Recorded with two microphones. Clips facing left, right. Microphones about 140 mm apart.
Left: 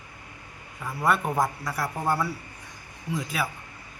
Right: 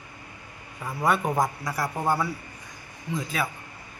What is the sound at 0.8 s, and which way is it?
Speech, centre (ahead or behind).